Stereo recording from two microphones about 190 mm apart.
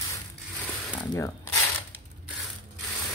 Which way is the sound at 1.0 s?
20° left (ahead or behind).